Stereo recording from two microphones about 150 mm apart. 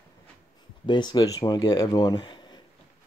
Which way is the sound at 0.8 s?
30° left (ahead or behind).